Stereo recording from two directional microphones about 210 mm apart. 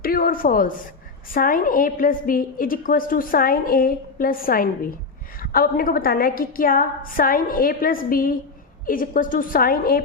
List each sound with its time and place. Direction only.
0.0 s a woman's voice: 45° left (ahead or behind)